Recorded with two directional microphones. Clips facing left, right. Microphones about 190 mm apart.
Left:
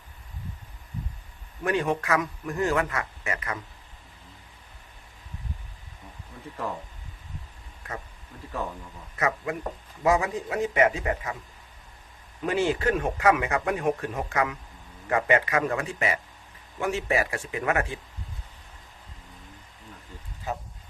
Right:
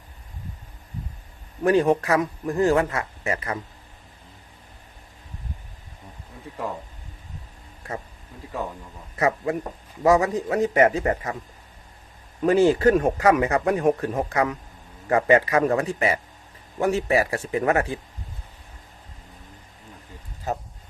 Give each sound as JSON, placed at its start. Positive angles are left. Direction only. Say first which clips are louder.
{"t": 1.6, "sound": "speech", "louder": "right 7 dB", "side_deg": -35}
{"t": 9.1, "sound": "speech", "louder": "right 5 dB", "side_deg": -30}
{"t": 12.4, "sound": "speech", "louder": "right 8 dB", "side_deg": -40}
{"t": 20.5, "sound": "speech", "louder": "right 4 dB", "side_deg": -40}